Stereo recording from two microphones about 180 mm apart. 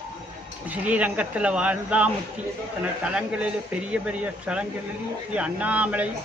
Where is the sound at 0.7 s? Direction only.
10° right (ahead or behind).